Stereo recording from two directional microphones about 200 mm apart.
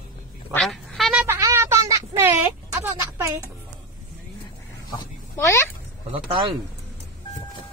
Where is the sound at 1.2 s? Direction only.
10° right (ahead or behind).